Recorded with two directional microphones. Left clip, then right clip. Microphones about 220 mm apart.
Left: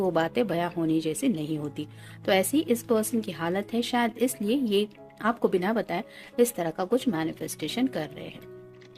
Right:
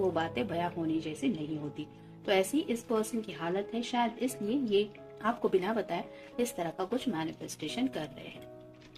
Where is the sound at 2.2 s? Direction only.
50° left (ahead or behind).